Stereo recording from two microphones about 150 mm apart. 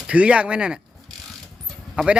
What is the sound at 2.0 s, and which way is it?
Speech, 10° right (ahead or behind).